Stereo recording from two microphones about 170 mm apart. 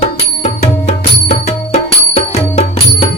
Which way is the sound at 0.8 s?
40° left (ahead or behind).